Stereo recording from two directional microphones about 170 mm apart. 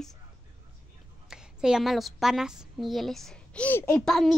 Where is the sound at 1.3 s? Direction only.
5° right (ahead or behind).